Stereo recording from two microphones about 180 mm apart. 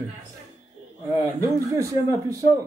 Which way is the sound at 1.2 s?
15° right (ahead or behind).